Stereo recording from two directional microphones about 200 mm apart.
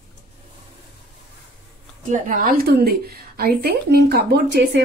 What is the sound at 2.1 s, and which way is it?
A woman's voice, 40° right (ahead or behind).